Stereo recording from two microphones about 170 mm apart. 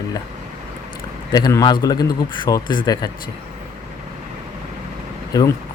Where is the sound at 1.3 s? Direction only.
20° left (ahead or behind).